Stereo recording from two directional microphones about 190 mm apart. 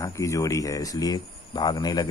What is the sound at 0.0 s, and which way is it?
Speech, 15° left (ahead or behind).